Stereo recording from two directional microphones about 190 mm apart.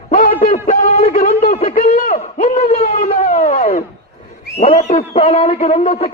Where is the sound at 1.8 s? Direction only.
45° left (ahead or behind).